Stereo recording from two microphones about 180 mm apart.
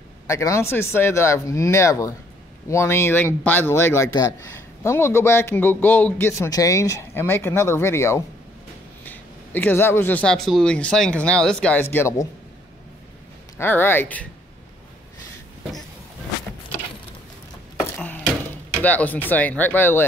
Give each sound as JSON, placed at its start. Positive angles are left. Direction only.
{"t": 0.3, "sound": "a man's voice", "side_deg": 15}
{"t": 13.6, "sound": "a man's voice", "side_deg": 10}
{"t": 17.7, "sound": "a sound", "side_deg": 10}
{"t": 18.8, "sound": "a man's voice", "side_deg": 10}